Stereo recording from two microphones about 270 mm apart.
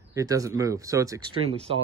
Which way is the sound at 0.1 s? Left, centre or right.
Centre.